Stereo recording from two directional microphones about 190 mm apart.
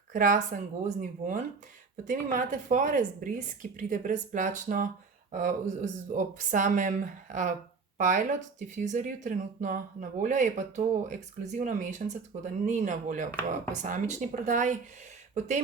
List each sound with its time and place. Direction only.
0.1 s speech: 40° right (ahead or behind)